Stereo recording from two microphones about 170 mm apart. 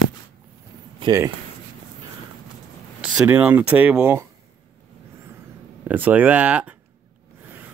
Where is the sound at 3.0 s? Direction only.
5° right (ahead or behind).